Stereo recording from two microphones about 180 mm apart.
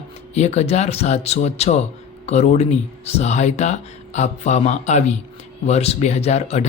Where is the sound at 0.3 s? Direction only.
40° left (ahead or behind).